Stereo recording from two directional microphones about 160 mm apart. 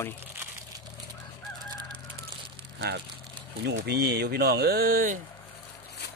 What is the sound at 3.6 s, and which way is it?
Speech, 90° right.